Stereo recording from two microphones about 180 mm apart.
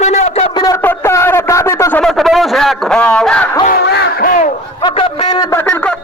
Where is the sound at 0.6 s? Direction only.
15° left (ahead or behind).